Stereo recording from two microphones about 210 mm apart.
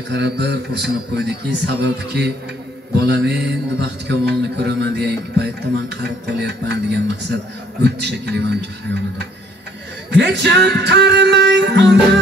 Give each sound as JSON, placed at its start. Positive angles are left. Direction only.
{"t": 0.1, "sound": "a man's voice", "side_deg": -50}